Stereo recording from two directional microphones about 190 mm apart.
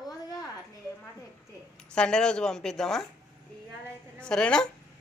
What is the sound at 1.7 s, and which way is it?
Speech, 5° left (ahead or behind).